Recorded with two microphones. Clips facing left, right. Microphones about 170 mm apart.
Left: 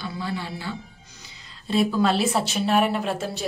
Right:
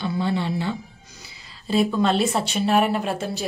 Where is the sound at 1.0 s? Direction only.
10° right (ahead or behind).